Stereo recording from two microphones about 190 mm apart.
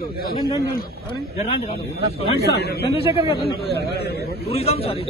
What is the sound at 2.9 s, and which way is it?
Speech, 30° left (ahead or behind).